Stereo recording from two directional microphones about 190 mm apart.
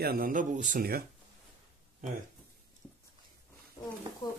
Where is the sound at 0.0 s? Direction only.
50° right (ahead or behind).